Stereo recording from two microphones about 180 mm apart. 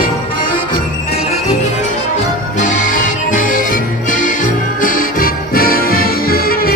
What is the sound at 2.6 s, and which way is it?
Music, 45° left (ahead or behind).